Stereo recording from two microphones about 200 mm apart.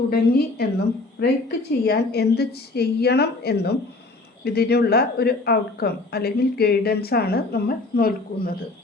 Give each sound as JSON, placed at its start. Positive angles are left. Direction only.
{"t": 0.1, "sound": "a woman's voice", "side_deg": 50}